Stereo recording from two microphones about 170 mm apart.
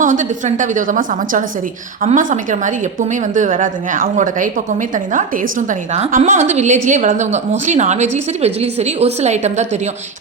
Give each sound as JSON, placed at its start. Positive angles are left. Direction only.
{"t": 0.0, "sound": "a woman's voice", "side_deg": -50}